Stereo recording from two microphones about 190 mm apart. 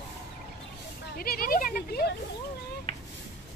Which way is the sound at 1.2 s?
50° left (ahead or behind).